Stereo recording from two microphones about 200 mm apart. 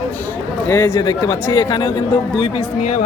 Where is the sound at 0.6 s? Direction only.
10° left (ahead or behind).